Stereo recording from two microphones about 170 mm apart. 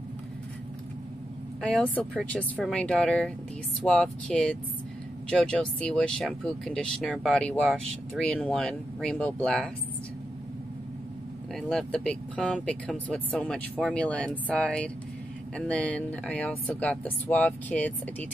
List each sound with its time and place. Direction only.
1.6 s speech: 5° left (ahead or behind)
11.5 s speech: 5° left (ahead or behind)